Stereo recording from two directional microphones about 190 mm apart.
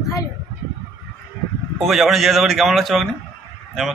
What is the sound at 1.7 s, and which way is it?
A man's voice, centre (ahead or behind).